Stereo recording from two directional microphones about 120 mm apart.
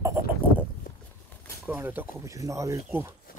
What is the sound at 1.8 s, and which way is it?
Speech, 20° right (ahead or behind).